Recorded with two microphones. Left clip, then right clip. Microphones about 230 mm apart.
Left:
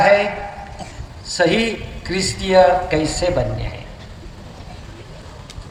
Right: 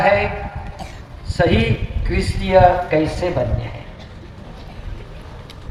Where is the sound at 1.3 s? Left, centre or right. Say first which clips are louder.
Left 1 dB; left.